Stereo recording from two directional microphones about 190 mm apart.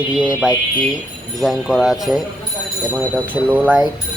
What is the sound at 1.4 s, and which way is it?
Speech, centre (ahead or behind).